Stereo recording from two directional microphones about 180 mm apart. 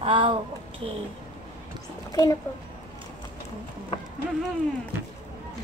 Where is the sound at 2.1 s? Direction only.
20° left (ahead or behind).